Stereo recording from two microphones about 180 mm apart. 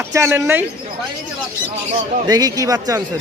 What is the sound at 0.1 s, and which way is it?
Speech, 15° right (ahead or behind).